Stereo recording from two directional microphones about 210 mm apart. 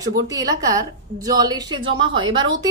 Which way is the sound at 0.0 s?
15° right (ahead or behind).